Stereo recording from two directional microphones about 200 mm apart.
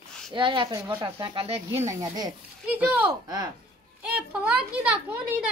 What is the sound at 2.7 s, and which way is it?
Speech, 5° right (ahead or behind).